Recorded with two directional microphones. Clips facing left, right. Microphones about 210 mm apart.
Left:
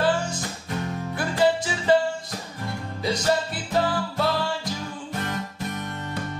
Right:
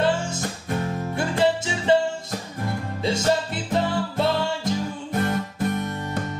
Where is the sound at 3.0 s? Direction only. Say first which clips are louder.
Right 1 dB; 25° right (ahead or behind).